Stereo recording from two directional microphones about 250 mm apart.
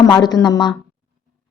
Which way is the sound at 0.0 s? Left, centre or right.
Centre.